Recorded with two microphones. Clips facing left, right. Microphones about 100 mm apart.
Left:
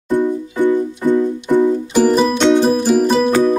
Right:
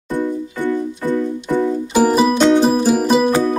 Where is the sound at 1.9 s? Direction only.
5° right (ahead or behind).